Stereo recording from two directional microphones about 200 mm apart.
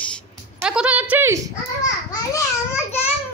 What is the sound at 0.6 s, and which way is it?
Speech, 5° right (ahead or behind).